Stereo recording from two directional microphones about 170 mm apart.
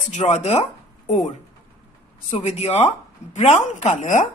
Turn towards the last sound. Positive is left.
turn(degrees=45)  # may be behind; listen again after turning